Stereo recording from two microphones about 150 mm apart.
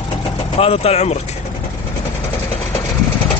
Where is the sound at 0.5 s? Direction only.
40° left (ahead or behind).